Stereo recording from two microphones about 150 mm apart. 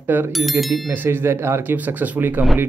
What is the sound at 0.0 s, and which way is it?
Speech, 15° right (ahead or behind).